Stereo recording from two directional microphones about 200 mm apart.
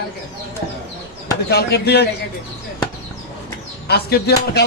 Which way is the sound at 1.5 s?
55° left (ahead or behind).